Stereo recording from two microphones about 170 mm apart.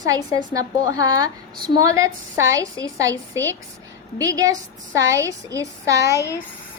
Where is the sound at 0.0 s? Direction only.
20° right (ahead or behind).